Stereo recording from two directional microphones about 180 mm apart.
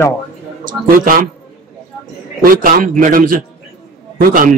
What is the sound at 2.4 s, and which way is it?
Speech, 50° right (ahead or behind).